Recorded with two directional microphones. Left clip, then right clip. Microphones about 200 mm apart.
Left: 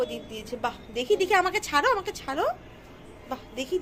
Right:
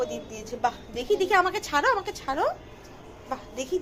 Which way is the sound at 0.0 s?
10° left (ahead or behind).